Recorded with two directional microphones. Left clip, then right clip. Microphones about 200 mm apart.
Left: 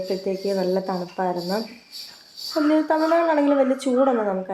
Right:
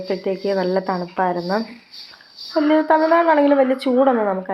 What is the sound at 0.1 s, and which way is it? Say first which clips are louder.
Speech: right 5 dB; 10° right (ahead or behind).